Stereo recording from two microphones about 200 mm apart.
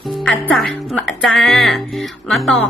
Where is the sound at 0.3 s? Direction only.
5° left (ahead or behind).